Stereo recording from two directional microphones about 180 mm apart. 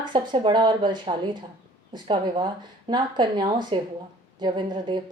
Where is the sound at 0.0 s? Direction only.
25° right (ahead or behind).